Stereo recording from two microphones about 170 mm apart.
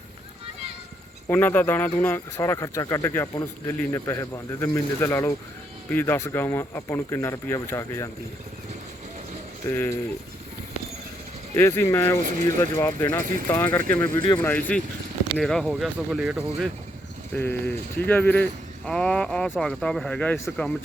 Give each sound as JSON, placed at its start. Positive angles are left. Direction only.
{"t": 1.3, "sound": "speech", "side_deg": 10}
{"t": 9.6, "sound": "speech", "side_deg": 15}
{"t": 11.5, "sound": "speech", "side_deg": 15}
{"t": 12.2, "sound": "speech", "side_deg": -50}
{"t": 12.5, "sound": "speech", "side_deg": 15}
{"t": 15.6, "sound": "speech", "side_deg": -5}
{"t": 17.3, "sound": "speech", "side_deg": 10}